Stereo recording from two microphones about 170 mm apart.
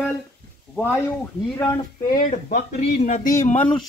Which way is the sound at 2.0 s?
50° left (ahead or behind).